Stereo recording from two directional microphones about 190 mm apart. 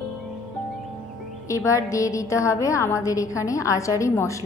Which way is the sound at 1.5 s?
15° left (ahead or behind).